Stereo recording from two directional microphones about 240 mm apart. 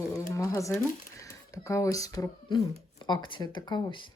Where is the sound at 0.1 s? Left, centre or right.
Centre.